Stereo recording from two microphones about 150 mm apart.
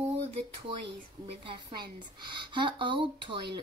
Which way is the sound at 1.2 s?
35° right (ahead or behind).